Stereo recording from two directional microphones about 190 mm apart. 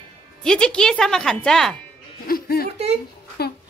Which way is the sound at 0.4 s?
5° left (ahead or behind).